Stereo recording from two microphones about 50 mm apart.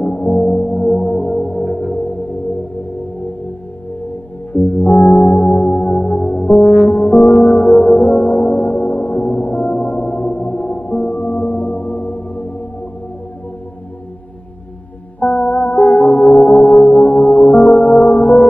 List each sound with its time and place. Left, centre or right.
0.0 s music: left
4.5 s singing bowl: left
15.1 s music: left